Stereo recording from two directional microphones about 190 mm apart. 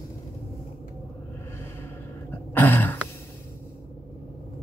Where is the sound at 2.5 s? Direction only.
10° left (ahead or behind).